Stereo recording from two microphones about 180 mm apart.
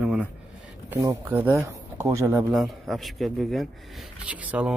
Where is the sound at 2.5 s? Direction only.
Centre (ahead or behind).